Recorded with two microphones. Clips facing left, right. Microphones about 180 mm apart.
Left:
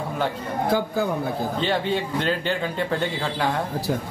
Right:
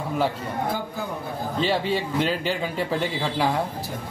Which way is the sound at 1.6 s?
5° right (ahead or behind).